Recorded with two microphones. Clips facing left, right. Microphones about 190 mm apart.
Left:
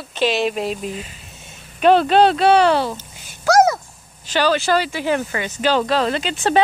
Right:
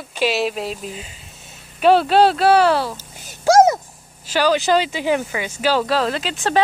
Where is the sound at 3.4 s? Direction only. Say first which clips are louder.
Right 2 dB; 25° right (ahead or behind).